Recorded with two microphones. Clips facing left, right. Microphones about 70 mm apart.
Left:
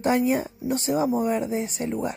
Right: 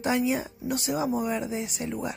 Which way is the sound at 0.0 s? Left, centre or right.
Left.